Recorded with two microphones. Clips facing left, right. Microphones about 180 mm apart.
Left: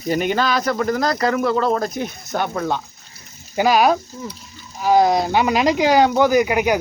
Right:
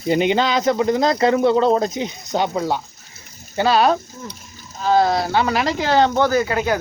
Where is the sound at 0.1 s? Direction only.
20° right (ahead or behind).